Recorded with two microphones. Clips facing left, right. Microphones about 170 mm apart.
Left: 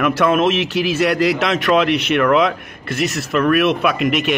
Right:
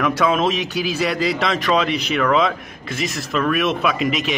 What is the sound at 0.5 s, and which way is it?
Speech, 65° left (ahead or behind).